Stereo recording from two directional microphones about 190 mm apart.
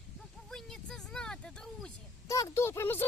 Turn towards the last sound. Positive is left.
turn(degrees=10)  # may be behind; listen again after turning